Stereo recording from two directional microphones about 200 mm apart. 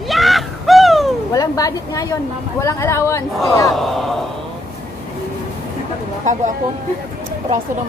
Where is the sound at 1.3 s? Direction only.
20° left (ahead or behind).